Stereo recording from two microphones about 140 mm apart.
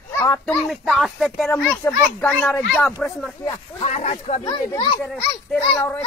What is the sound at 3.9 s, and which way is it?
Speech, 50° left (ahead or behind).